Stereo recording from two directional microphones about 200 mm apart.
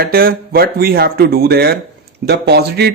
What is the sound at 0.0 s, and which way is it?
Speech, 50° right (ahead or behind).